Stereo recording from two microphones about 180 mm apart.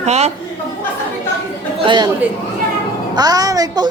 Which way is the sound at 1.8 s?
25° right (ahead or behind).